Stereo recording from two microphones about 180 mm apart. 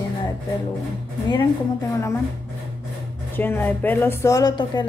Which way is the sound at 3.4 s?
10° left (ahead or behind).